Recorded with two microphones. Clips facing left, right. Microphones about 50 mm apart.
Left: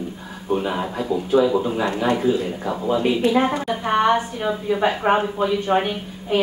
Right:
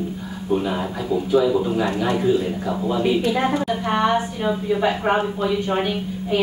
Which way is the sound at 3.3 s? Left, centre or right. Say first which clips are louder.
Left 1 dB; centre.